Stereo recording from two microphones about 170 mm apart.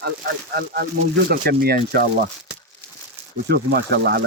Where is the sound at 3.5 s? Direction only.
75° right (ahead or behind).